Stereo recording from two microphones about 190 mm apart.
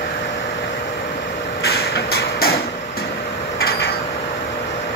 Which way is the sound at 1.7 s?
60° left (ahead or behind).